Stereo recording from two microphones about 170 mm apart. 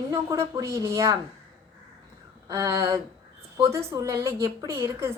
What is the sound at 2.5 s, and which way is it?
A woman's voice, 20° right (ahead or behind).